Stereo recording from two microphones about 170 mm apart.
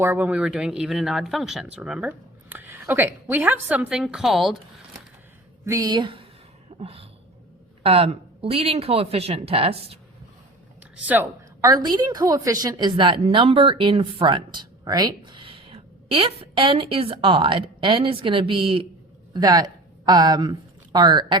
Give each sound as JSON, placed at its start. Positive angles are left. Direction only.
{"t": 0.0, "sound": "speech", "side_deg": -10}
{"t": 5.6, "sound": "a woman's voice", "side_deg": -20}
{"t": 6.7, "sound": "a sound", "side_deg": -35}
{"t": 7.8, "sound": "speech", "side_deg": -35}
{"t": 11.0, "sound": "a woman's voice", "side_deg": -10}
{"t": 11.6, "sound": "a woman's voice", "side_deg": -20}